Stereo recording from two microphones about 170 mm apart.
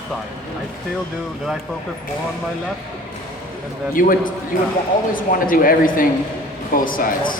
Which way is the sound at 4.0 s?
55° left (ahead or behind).